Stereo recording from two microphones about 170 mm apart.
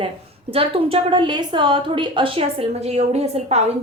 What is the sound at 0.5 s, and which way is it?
A woman's voice, 35° right (ahead or behind).